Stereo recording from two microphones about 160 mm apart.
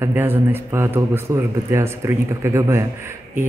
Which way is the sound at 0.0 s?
15° right (ahead or behind).